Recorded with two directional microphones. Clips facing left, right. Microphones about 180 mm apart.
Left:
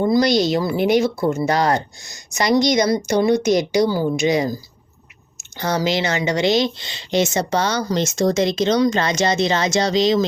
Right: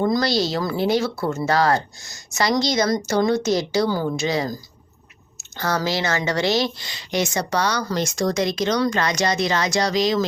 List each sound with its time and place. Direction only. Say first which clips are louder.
0.0 s speech: left 4 dB; 15° left (ahead or behind)